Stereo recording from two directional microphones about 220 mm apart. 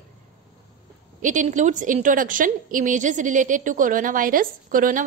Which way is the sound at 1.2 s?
35° right (ahead or behind).